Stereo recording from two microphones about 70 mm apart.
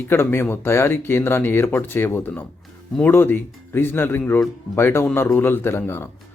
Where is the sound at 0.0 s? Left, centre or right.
Left.